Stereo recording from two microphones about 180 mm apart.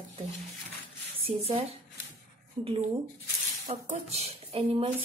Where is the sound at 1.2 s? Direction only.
35° right (ahead or behind).